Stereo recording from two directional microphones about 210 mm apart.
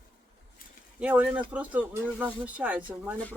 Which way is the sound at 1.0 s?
5° right (ahead or behind).